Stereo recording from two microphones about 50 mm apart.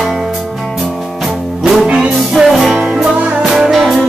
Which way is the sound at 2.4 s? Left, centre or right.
Centre.